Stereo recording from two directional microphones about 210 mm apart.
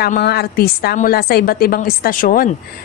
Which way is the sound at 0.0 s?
50° left (ahead or behind).